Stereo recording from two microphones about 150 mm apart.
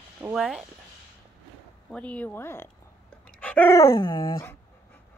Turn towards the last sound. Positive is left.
turn(degrees=35)  # may be behind; listen again after turning